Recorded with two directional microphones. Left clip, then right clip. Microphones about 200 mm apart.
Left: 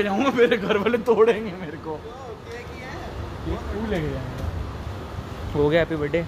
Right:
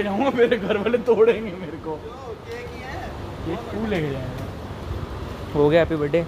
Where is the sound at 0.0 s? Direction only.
55° left (ahead or behind).